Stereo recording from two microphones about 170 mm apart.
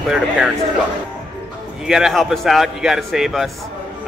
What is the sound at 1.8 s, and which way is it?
Speech, 5° right (ahead or behind).